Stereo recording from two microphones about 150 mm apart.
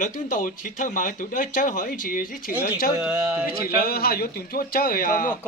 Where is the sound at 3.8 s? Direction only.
85° left; by 5.3 s 70° left (ahead or behind).